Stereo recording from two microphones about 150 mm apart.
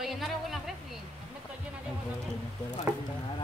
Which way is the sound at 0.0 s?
Centre (ahead or behind).